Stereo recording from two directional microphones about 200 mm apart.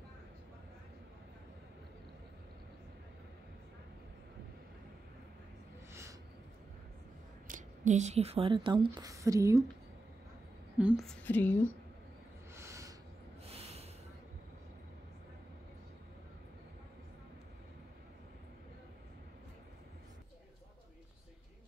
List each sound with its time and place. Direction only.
7.4 s a woman's voice: 40° right (ahead or behind); by 9.7 s 15° right (ahead or behind)
10.8 s a woman's voice: 5° right (ahead or behind)
12.5 s a sound: 15° right (ahead or behind)
13.5 s snort: 30° right (ahead or behind)